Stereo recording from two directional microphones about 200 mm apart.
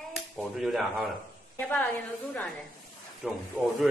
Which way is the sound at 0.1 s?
Centre (ahead or behind).